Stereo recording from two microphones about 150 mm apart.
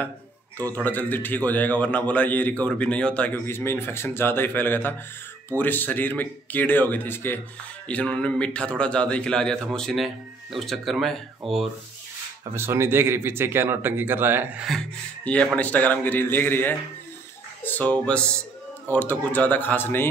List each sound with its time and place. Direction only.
0.6 s a man's voice: 10° left (ahead or behind)
12.5 s speech: 15° right (ahead or behind)
14.7 s a man's voice: 5° left (ahead or behind)